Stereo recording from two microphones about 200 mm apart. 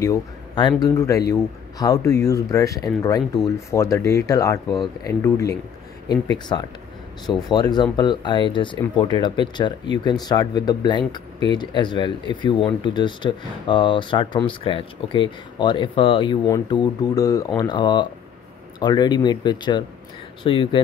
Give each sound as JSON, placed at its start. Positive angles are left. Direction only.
{"t": 0.0, "sound": "speech", "side_deg": 20}
{"t": 6.5, "sound": "speech", "side_deg": 20}